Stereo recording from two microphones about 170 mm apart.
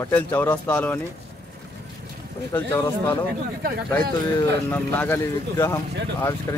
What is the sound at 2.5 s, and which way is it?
Speech, 15° left (ahead or behind).